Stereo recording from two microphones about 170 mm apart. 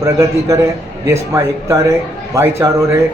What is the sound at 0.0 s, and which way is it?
A man's voice, 20° right (ahead or behind).